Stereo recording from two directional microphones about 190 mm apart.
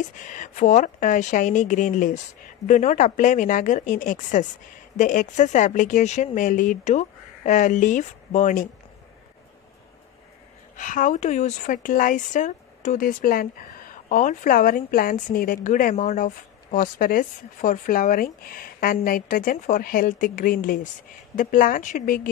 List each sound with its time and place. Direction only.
0.0 s a woman's voice: 45° left (ahead or behind)
10.8 s speech: 45° left (ahead or behind)